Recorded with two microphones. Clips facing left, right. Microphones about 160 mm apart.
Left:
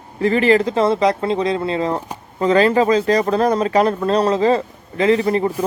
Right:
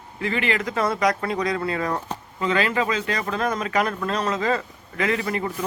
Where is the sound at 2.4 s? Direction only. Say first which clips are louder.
Left 9 dB; 35° left (ahead or behind).